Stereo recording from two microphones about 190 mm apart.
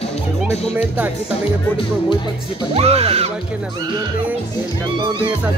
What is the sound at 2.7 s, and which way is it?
Speech, 30° right (ahead or behind).